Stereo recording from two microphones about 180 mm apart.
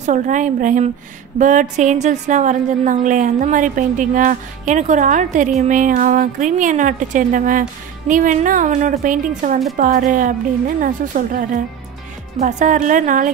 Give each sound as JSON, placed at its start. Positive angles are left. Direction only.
{"t": 0.0, "sound": "a woman's voice", "side_deg": -45}